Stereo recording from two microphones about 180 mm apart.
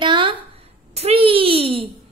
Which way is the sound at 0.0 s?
25° right (ahead or behind).